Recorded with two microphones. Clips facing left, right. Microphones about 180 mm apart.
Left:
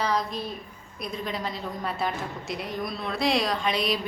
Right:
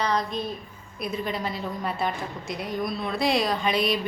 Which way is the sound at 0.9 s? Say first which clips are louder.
Right 3 dB; 5° right (ahead or behind).